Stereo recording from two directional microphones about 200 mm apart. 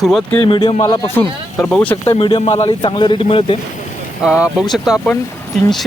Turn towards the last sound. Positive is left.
turn(degrees=0)  # may be behind; listen again after turning